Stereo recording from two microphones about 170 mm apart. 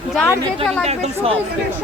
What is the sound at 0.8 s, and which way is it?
Speech, 35° right (ahead or behind).